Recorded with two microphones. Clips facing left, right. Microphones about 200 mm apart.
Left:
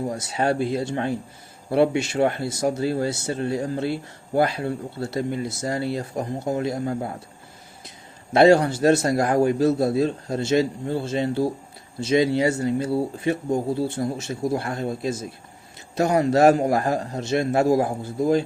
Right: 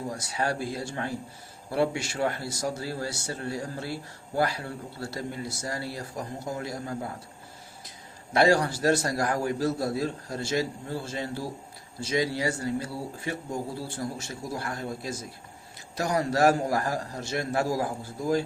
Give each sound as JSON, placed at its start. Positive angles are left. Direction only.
{"t": 0.1, "sound": "speech", "side_deg": 25}
{"t": 8.3, "sound": "speech", "side_deg": 25}